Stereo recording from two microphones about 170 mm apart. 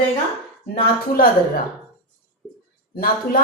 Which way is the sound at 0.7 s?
60° left (ahead or behind).